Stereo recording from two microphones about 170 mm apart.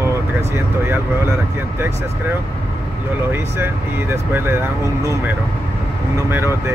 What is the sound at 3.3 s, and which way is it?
Speech, 10° right (ahead or behind).